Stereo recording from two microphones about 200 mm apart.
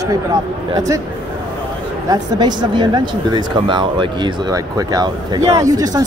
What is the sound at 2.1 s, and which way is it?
Speech, 20° right (ahead or behind).